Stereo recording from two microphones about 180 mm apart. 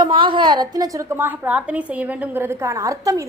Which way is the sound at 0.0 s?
25° right (ahead or behind).